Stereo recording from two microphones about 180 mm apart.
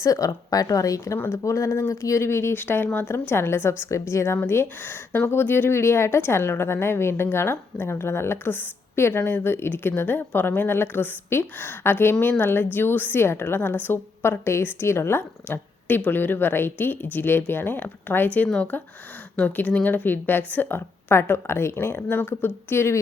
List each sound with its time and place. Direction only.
0.0 s speech: 20° left (ahead or behind)